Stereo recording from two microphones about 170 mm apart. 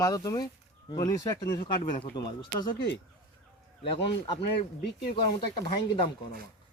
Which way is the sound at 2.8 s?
90° left.